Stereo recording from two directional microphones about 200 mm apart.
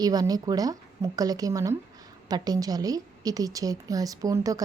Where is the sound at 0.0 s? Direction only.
20° right (ahead or behind).